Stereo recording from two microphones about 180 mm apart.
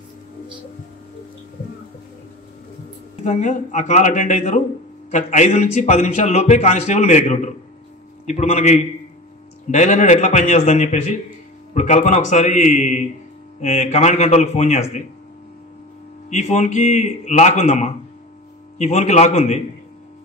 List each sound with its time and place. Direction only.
3.3 s a man's voice: 40° left (ahead or behind)
16.3 s a man's voice: 40° left (ahead or behind)